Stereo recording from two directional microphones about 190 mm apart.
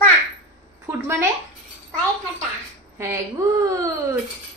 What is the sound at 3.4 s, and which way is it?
Speech, 15° right (ahead or behind).